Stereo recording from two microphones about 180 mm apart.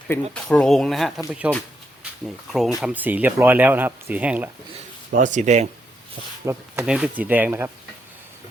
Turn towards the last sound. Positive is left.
turn(degrees=-10)  # may be behind; listen again after turning